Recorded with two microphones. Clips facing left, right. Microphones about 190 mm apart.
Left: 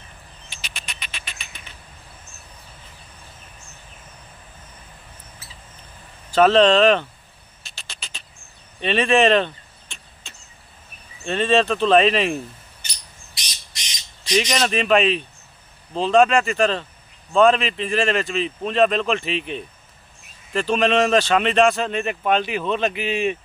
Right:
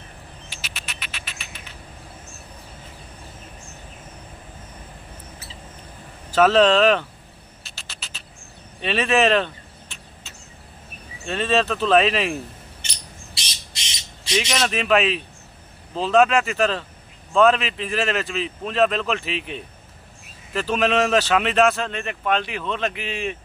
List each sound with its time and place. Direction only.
0.5 s frog: 5° right (ahead or behind)
6.3 s speech: 5° right (ahead or behind)
7.6 s a sound: centre (ahead or behind)
8.8 s vehicle: 5° right (ahead or behind)
11.2 s speech: 5° right (ahead or behind)
12.8 s squawk: 25° right (ahead or behind)
14.5 s speech: 5° right (ahead or behind)